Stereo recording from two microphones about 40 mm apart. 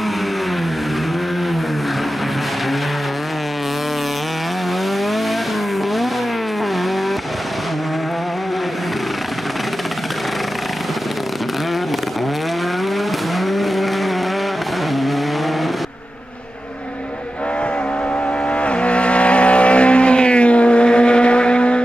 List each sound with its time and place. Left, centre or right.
13.5 s vehicle: centre
18.6 s vehicle: left